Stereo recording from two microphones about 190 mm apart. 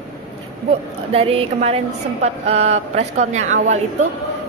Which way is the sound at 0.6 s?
30° right (ahead or behind).